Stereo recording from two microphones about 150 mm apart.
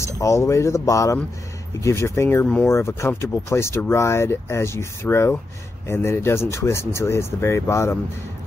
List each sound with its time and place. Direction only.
0.0 s speech: 20° left (ahead or behind)